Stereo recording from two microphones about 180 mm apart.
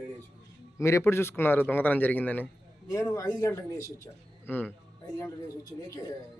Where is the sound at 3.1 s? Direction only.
20° left (ahead or behind).